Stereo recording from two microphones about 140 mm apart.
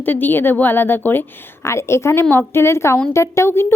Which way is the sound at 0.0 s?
15° left (ahead or behind).